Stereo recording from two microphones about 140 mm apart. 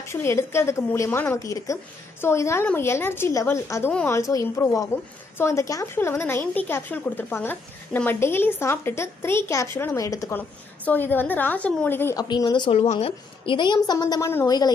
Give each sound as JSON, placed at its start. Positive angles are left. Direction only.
{"t": 0.0, "sound": "a woman's voice", "side_deg": 20}
{"t": 12.2, "sound": "a woman's voice", "side_deg": 30}